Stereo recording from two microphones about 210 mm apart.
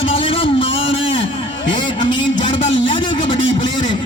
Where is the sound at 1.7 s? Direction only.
20° left (ahead or behind).